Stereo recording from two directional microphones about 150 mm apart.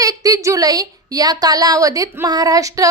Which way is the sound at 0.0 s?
25° right (ahead or behind).